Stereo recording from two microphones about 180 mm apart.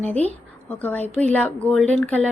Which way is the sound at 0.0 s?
10° left (ahead or behind).